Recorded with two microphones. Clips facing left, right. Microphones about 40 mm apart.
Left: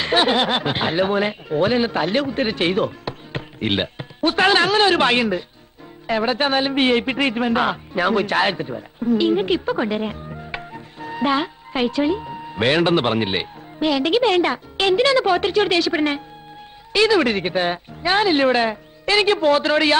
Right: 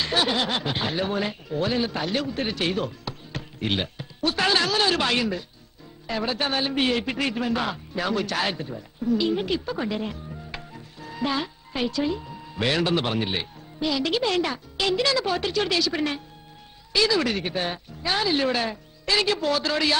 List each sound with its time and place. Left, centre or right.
0.0 s a man's voice: left